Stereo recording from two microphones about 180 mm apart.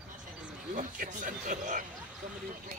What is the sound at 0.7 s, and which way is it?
Speech, 50° right (ahead or behind).